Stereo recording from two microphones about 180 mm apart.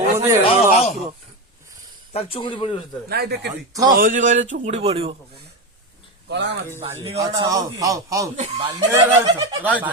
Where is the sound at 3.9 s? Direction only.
50° right (ahead or behind).